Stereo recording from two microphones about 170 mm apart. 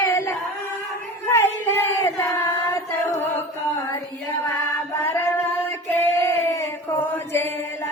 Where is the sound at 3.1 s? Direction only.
15° left (ahead or behind).